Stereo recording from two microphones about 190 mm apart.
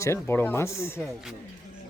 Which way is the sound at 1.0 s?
Centre (ahead or behind).